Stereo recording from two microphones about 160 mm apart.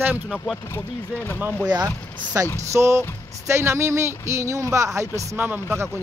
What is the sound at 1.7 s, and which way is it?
Speech, 25° right (ahead or behind).